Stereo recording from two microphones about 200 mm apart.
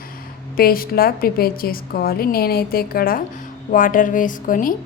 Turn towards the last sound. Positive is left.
turn(degrees=40)  # may be behind; listen again after turning